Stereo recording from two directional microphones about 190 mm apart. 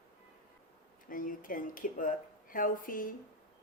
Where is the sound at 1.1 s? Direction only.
45° left (ahead or behind).